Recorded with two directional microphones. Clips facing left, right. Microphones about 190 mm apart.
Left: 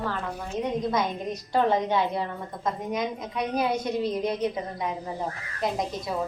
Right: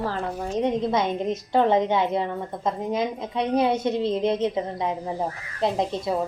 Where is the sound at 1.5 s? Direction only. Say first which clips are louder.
Right 3 dB; 20° right (ahead or behind).